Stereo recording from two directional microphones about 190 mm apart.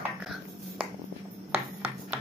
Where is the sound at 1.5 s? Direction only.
10° right (ahead or behind).